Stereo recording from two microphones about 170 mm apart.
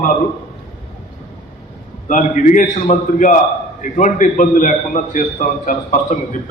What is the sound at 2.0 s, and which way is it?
A man's voice, 50° left (ahead or behind).